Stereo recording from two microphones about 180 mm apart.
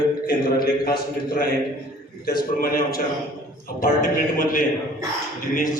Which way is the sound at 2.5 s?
55° left (ahead or behind).